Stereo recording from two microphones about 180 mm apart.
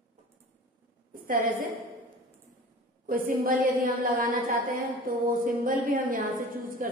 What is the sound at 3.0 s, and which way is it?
A woman's voice, 50° right (ahead or behind).